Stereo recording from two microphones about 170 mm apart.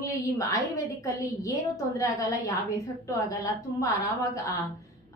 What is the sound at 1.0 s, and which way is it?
A woman's voice, 20° left (ahead or behind).